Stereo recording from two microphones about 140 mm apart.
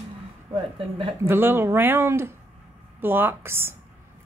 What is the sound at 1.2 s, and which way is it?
A woman's voice, 15° right (ahead or behind).